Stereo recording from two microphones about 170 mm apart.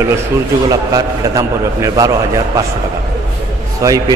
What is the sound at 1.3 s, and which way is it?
Speech, 20° right (ahead or behind).